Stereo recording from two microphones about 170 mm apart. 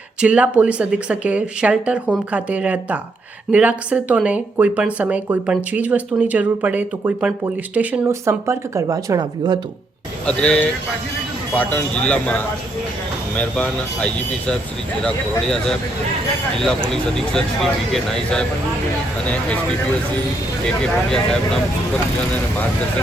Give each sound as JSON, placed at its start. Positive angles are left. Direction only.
{"t": 0.2, "sound": "speech", "side_deg": -5}
{"t": 10.2, "sound": "speech", "side_deg": 5}
{"t": 16.9, "sound": "speech", "side_deg": 5}